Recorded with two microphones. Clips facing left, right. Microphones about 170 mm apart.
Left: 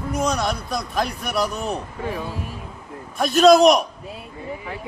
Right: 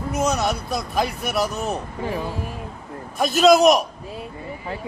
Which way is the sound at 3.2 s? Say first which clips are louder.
Left 2 dB; centre (ahead or behind).